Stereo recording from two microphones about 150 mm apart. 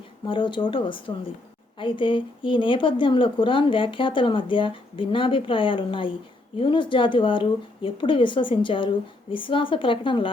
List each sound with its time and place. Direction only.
0.3 s a woman's voice: 35° left (ahead or behind)